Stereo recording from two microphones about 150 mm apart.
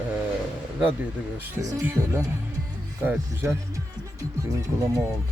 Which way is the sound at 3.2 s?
20° right (ahead or behind).